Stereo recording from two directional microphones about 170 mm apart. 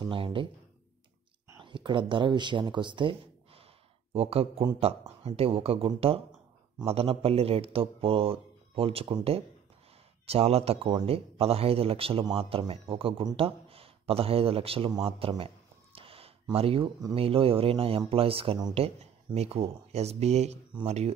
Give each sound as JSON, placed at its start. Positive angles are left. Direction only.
{"t": 0.0, "sound": "speech", "side_deg": -30}
{"t": 1.6, "sound": "speech", "side_deg": -30}